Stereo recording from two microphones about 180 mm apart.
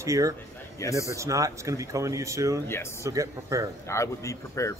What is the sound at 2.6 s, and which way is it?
Speech, 15° left (ahead or behind).